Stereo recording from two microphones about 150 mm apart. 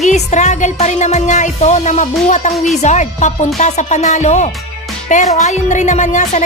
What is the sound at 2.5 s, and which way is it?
Speech, centre (ahead or behind).